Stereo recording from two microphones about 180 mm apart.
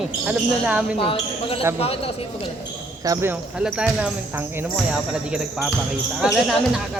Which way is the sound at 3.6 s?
5° right (ahead or behind).